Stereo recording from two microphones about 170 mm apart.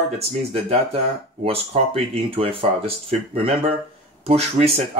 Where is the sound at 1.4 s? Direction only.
35° right (ahead or behind).